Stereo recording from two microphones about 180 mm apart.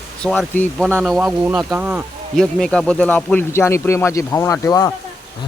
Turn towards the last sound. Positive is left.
turn(degrees=15)  # may be behind; listen again after turning